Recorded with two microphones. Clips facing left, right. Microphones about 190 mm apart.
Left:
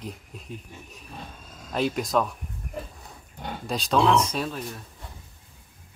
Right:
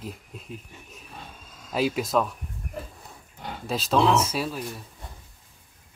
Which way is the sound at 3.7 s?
Centre (ahead or behind).